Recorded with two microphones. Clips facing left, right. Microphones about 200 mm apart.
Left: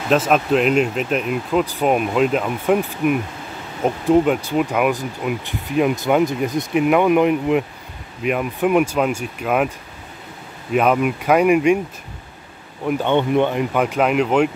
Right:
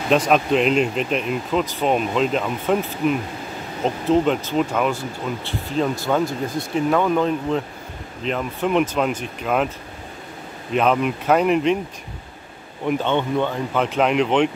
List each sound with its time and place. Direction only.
0.1 s speech: centre (ahead or behind)
10.7 s speech: 5° left (ahead or behind)
12.8 s speech: 10° left (ahead or behind)